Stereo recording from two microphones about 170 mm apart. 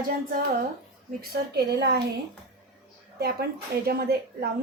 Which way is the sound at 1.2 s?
65° right (ahead or behind).